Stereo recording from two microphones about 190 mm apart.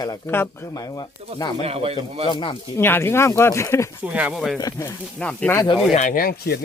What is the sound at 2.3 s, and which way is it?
Speech, 25° left (ahead or behind).